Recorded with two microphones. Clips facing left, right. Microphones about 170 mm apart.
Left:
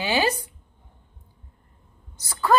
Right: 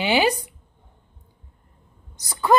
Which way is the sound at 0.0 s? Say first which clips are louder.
Right 3 dB; 15° right (ahead or behind).